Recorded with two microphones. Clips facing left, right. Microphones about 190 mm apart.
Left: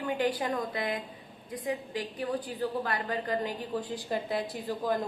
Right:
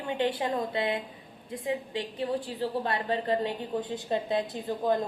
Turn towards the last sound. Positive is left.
turn(degrees=-20)  # may be behind; listen again after turning